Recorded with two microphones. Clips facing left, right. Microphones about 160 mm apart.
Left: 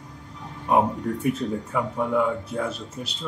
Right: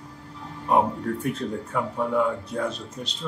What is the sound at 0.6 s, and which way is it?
Speech, 5° left (ahead or behind).